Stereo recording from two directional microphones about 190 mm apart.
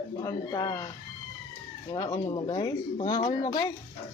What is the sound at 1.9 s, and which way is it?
Speech, 20° left (ahead or behind).